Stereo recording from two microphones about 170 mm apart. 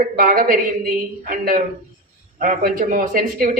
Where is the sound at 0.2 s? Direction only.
55° right (ahead or behind).